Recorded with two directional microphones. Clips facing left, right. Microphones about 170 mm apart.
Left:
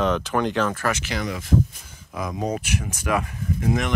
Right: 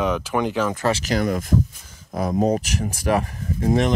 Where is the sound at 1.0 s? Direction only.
45° right (ahead or behind).